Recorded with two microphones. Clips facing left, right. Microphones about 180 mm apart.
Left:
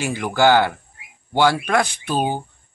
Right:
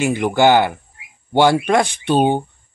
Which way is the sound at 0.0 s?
20° right (ahead or behind).